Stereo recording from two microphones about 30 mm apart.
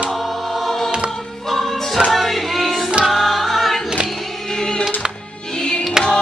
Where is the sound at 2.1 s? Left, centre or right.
Centre.